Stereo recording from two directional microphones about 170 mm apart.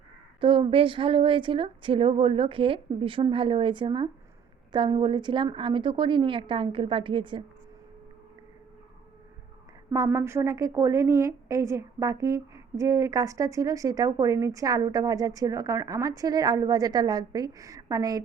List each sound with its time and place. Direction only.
0.3 s a woman's voice: 30° right (ahead or behind)
9.9 s a woman's voice: 15° right (ahead or behind)